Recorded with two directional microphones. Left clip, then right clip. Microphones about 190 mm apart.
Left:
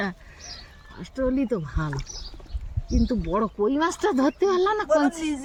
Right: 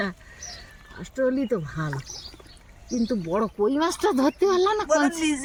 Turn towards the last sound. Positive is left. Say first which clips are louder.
# even
turn(degrees=65)  # may be behind; listen again after turning